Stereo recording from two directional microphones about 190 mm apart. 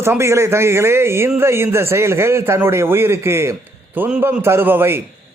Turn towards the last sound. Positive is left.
turn(degrees=-10)  # may be behind; listen again after turning